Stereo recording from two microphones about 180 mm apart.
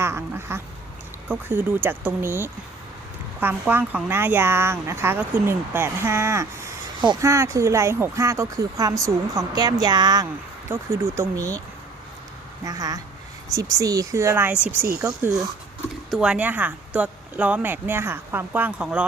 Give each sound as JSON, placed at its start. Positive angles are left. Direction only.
{"t": 0.0, "sound": "quack", "side_deg": -15}
{"t": 1.3, "sound": "speech", "side_deg": -10}
{"t": 12.6, "sound": "speech", "side_deg": -20}
{"t": 16.0, "sound": "speech", "side_deg": 0}